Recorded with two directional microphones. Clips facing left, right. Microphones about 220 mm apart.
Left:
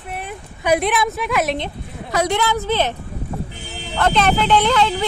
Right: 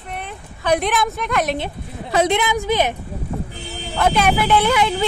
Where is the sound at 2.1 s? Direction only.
20° right (ahead or behind).